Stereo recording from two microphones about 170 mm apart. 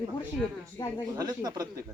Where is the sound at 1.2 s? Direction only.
25° right (ahead or behind).